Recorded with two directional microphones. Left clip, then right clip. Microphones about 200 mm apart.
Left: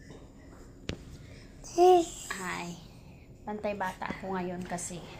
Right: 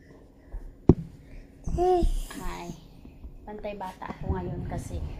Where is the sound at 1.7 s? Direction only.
10° left (ahead or behind).